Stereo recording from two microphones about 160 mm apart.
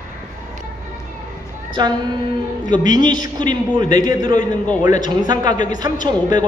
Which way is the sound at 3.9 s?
25° right (ahead or behind).